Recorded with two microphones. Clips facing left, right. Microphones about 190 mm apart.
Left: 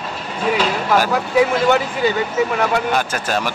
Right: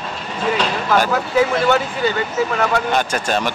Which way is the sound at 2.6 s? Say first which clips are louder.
Even; 5° left (ahead or behind).